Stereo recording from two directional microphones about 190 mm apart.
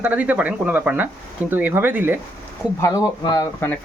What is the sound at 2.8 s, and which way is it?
Speech, 15° left (ahead or behind).